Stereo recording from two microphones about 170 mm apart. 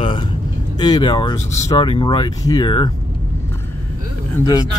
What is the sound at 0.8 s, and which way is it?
Speech, 25° left (ahead or behind).